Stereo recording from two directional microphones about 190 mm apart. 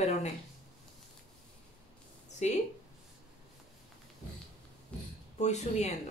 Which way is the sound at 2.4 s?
35° left (ahead or behind).